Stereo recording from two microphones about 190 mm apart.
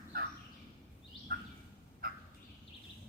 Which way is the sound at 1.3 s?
50° right (ahead or behind).